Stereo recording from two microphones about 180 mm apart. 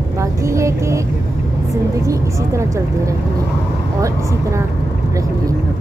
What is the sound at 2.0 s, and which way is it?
A woman's voice, 15° right (ahead or behind).